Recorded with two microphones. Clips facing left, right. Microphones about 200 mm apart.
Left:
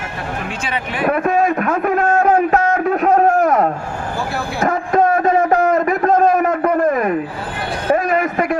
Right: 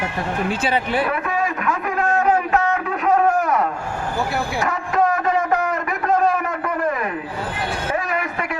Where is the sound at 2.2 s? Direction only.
40° left (ahead or behind).